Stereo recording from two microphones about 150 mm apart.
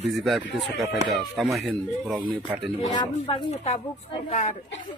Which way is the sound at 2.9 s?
40° left (ahead or behind).